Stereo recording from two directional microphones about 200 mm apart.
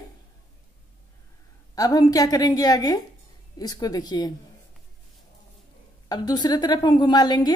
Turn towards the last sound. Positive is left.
turn(degrees=20)  # may be behind; listen again after turning